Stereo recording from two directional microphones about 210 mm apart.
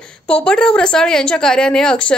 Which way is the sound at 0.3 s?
5° left (ahead or behind).